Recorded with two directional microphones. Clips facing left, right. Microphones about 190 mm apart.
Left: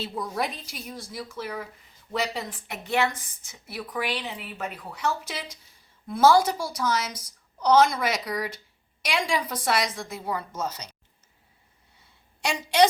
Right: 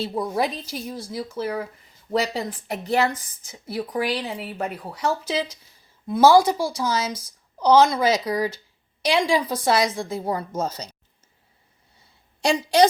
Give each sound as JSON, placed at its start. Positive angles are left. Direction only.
{"t": 0.0, "sound": "a woman's voice", "side_deg": -35}
{"t": 6.1, "sound": "a woman's voice", "side_deg": -25}
{"t": 12.4, "sound": "a woman's voice", "side_deg": -35}